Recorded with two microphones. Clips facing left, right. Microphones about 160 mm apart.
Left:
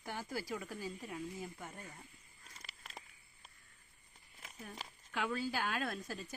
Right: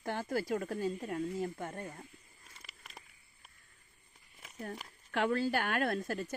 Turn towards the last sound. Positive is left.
turn(degrees=-65)  # may be behind; listen again after turning